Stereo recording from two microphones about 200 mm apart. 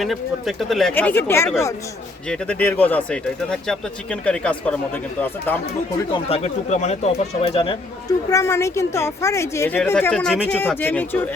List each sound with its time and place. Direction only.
0.0 s speech: centre (ahead or behind)
6.1 s speech: 30° left (ahead or behind)
8.3 s a woman's voice: 15° left (ahead or behind)